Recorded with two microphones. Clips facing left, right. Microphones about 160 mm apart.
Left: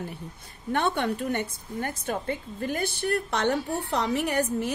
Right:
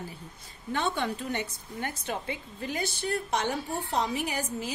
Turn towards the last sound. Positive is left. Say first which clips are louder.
# left 6 dB
turn(degrees=65)  # may be behind; listen again after turning